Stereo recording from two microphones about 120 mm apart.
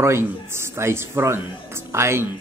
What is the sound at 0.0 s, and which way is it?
Speech, 20° right (ahead or behind).